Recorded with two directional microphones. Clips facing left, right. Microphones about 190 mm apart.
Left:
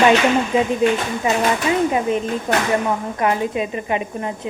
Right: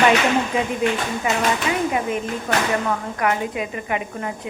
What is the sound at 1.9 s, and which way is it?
Speech, 25° left (ahead or behind).